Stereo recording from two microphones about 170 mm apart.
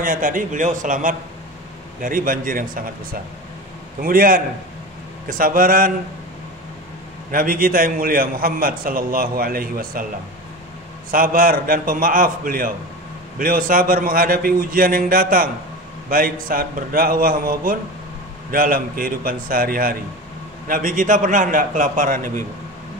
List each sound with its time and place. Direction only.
0.0 s a man's voice: 55° right (ahead or behind)
7.2 s a man's voice: 55° right (ahead or behind)
11.1 s a man's voice: 55° right (ahead or behind)